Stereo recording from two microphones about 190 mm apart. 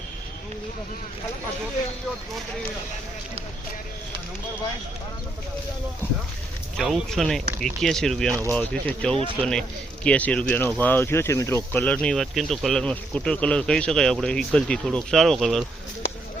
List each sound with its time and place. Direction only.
6.7 s speech: centre (ahead or behind)
8.3 s speech: 15° right (ahead or behind)
8.5 s speech: 5° left (ahead or behind)